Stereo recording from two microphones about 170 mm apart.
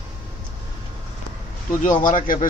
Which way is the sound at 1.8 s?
50° left (ahead or behind).